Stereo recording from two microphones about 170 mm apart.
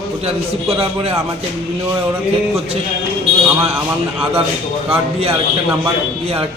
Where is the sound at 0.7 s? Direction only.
35° right (ahead or behind).